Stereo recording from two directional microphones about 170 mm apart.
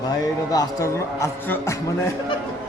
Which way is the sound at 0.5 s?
15° left (ahead or behind).